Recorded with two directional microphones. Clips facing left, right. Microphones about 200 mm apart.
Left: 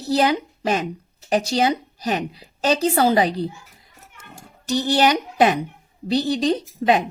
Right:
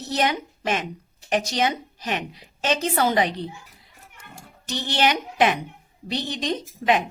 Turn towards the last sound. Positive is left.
turn(degrees=35)  # may be behind; listen again after turning